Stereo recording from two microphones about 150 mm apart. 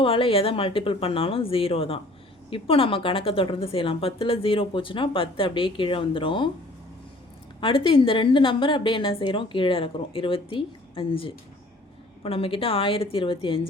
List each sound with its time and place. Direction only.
0.0 s a woman's voice: 40° left (ahead or behind)
7.6 s a woman's voice: 35° left (ahead or behind)